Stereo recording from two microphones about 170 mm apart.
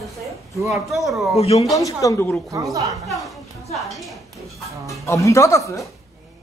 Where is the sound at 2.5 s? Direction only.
20° right (ahead or behind).